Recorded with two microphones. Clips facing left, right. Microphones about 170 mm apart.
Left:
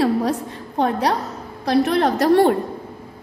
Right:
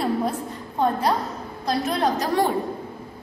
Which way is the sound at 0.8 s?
75° left (ahead or behind).